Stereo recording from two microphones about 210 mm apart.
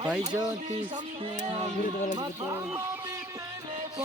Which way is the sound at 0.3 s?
15° right (ahead or behind).